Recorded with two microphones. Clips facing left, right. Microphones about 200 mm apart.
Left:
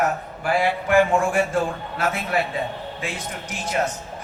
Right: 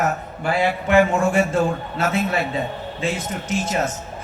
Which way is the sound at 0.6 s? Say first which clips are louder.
Right 2 dB; 25° right (ahead or behind).